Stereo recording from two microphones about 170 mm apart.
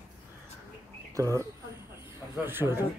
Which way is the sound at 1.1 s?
20° right (ahead or behind).